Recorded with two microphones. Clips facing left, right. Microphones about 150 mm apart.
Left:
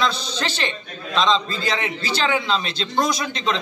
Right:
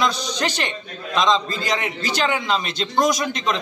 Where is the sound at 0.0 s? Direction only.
15° right (ahead or behind).